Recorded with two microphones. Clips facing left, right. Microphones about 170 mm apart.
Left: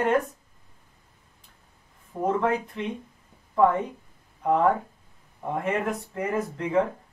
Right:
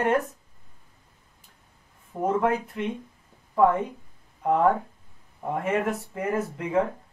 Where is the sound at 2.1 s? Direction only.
5° right (ahead or behind).